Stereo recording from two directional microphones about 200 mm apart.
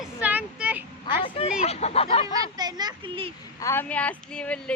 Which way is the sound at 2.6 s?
20° right (ahead or behind).